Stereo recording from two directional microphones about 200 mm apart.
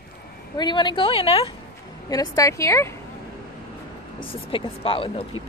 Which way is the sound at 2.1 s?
15° left (ahead or behind).